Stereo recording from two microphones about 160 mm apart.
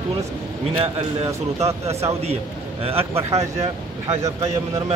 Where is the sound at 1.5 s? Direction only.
40° right (ahead or behind).